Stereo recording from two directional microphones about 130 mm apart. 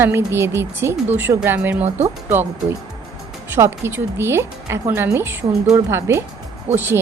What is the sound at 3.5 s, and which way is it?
Speech, 20° right (ahead or behind).